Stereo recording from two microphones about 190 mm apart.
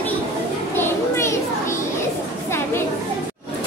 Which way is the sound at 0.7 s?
10° left (ahead or behind).